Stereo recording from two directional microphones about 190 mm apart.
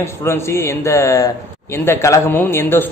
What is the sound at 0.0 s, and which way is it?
A man's voice, 15° left (ahead or behind).